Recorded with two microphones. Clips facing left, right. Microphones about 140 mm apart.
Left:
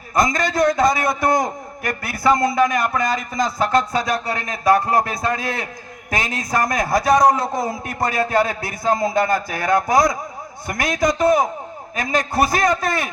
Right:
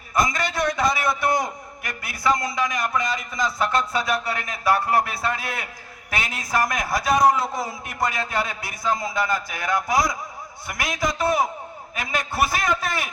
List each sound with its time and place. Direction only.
0.3 s a man's voice: 45° left (ahead or behind)